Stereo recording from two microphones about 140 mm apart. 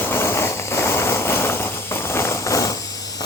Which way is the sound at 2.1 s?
20° left (ahead or behind).